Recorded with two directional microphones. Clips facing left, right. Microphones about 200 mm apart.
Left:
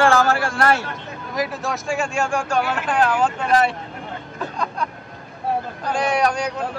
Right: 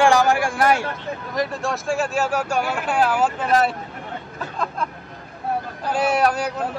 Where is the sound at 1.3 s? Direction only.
Centre (ahead or behind).